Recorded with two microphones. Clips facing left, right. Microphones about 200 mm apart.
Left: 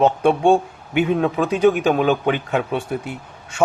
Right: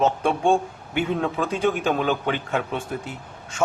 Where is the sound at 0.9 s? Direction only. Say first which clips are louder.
Left 6 dB; 15° left (ahead or behind).